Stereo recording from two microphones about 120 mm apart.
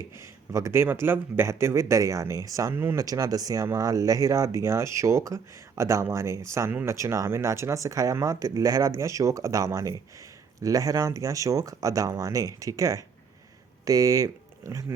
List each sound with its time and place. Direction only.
0.0 s a man's voice: 25° right (ahead or behind)